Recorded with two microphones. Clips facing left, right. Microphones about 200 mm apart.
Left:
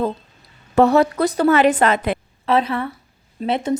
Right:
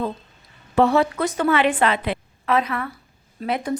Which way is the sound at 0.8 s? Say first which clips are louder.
Left 4 dB; 40° left (ahead or behind).